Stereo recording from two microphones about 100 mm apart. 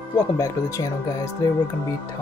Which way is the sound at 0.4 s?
35° left (ahead or behind).